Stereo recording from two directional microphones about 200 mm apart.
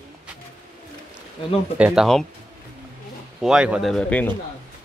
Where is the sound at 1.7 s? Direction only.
5° right (ahead or behind).